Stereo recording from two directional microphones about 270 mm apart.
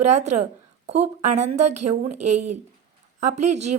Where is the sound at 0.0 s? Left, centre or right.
Right.